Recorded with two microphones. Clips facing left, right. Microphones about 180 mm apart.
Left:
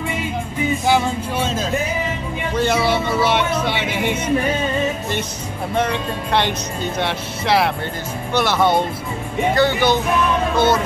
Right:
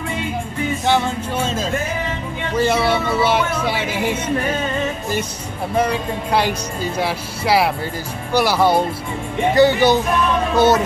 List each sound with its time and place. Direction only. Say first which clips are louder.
0.8 s speech: right 1 dB; 5° left (ahead or behind)
5.8 s speech: right 2 dB; 5° right (ahead or behind)
10.5 s speech: right 4 dB; 40° right (ahead or behind)